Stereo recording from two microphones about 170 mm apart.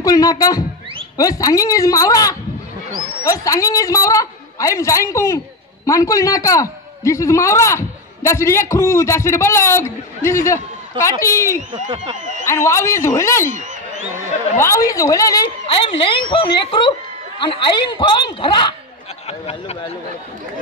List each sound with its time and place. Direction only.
0.0 s a woman's voice: 20° left (ahead or behind)
14.6 s a woman's voice: 15° left (ahead or behind)
15.6 s a woman's voice: 35° left (ahead or behind)